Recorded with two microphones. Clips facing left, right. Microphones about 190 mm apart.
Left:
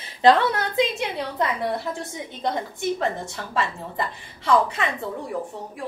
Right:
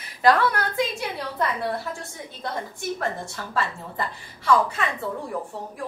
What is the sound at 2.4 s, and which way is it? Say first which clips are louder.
Speech: left 5 dB; 20° left (ahead or behind).